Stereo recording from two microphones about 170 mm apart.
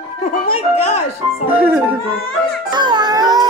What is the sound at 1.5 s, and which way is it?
Speech, 10° right (ahead or behind).